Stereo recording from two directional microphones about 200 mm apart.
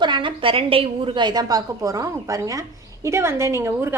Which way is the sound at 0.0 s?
25° right (ahead or behind).